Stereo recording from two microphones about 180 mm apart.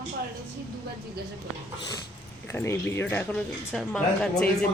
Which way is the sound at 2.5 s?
15° left (ahead or behind).